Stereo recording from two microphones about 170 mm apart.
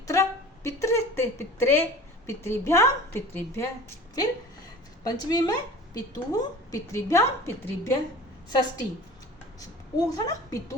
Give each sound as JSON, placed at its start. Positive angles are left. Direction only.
{"t": 0.1, "sound": "a woman's voice", "side_deg": 15}
{"t": 10.1, "sound": "a woman's voice", "side_deg": 20}